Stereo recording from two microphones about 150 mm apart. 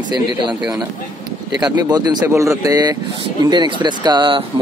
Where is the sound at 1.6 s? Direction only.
25° right (ahead or behind).